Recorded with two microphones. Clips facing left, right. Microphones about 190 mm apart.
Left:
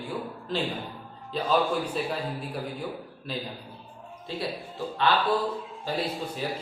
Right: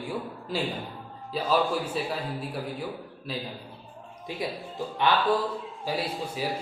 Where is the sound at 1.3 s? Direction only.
5° right (ahead or behind).